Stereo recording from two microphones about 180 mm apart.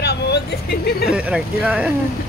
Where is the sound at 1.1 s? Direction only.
5° right (ahead or behind).